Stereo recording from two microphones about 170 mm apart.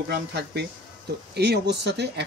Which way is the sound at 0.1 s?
85° right.